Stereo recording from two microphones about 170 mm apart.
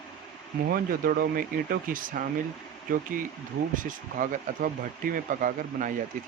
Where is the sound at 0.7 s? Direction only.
55° right (ahead or behind).